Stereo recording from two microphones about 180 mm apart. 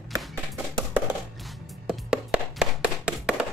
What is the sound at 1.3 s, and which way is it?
Music, centre (ahead or behind).